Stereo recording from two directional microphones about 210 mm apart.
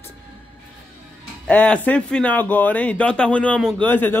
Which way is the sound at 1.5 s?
5° left (ahead or behind).